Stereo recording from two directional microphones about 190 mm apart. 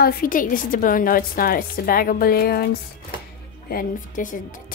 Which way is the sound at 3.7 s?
45° left (ahead or behind).